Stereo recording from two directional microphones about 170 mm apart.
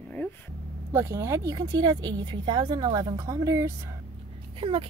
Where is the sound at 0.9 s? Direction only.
15° right (ahead or behind).